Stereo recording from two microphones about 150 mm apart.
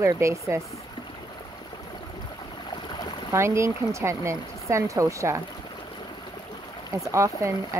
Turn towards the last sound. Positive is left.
turn(degrees=-20)  # may be behind; listen again after turning